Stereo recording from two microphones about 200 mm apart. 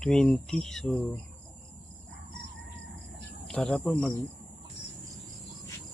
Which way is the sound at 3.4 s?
5° left (ahead or behind).